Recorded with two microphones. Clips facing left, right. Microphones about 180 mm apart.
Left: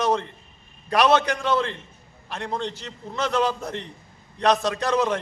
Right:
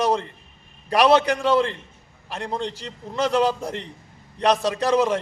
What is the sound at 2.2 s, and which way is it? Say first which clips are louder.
A man's voice: right 1 dB; 10° right (ahead or behind).